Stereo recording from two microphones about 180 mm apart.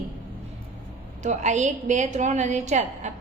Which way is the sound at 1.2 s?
40° right (ahead or behind).